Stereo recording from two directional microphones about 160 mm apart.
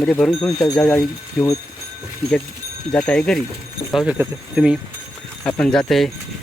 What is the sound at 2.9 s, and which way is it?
Speech, 5° left (ahead or behind).